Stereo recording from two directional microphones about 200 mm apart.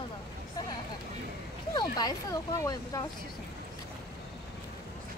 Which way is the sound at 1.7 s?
20° left (ahead or behind).